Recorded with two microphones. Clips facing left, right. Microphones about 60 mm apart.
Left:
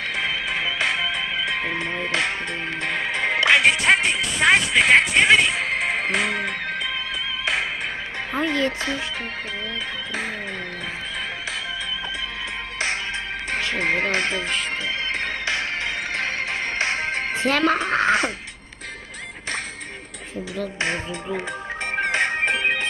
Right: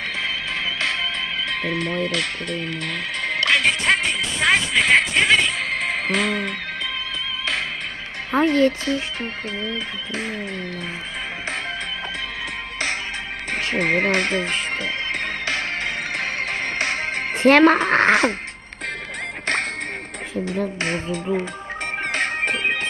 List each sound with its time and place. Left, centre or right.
0.2 s music: centre
1.5 s speech: centre
8.3 s speech: right
13.5 s a woman's voice: right
16.7 s music: left
17.3 s a woman's voice: right
22.0 s music: centre
22.5 s music: centre